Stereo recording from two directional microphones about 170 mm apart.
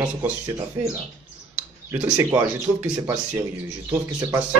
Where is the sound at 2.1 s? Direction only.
15° right (ahead or behind).